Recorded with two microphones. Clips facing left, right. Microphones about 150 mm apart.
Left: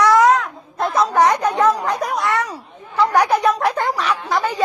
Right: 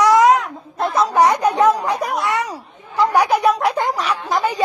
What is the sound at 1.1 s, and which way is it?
A woman's voice, 10° right (ahead or behind).